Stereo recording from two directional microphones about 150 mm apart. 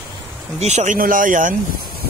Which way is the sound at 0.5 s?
50° right (ahead or behind).